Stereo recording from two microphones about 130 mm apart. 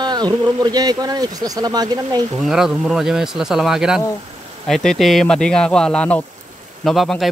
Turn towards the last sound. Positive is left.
turn(degrees=0)  # may be behind; listen again after turning